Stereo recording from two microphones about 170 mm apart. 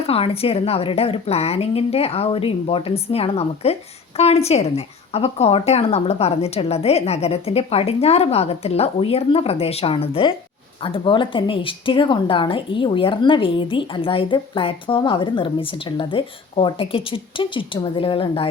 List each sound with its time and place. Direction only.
0.0 s speech: 35° left (ahead or behind)